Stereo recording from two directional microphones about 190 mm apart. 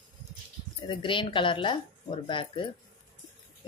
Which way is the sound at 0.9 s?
25° left (ahead or behind).